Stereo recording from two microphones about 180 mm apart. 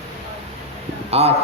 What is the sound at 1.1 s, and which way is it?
Speech, 35° right (ahead or behind).